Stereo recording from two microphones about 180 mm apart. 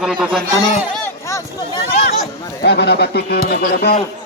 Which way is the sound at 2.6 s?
65° left (ahead or behind).